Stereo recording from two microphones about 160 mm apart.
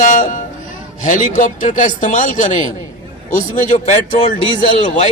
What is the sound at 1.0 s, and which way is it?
Speech, 55° left (ahead or behind).